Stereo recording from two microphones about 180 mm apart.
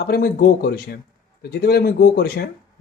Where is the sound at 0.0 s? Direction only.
60° left (ahead or behind).